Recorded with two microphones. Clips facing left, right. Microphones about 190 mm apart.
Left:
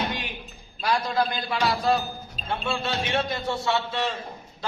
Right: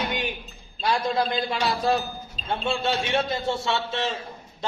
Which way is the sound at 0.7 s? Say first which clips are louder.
Right 1 dB; 25° right (ahead or behind).